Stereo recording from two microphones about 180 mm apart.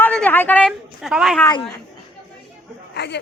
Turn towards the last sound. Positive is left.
turn(degrees=70)  # may be behind; listen again after turning